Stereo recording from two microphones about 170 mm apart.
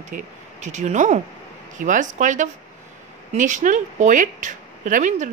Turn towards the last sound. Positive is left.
turn(degrees=-45)  # may be behind; listen again after turning